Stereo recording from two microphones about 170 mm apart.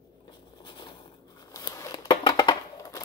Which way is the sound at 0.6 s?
25° left (ahead or behind).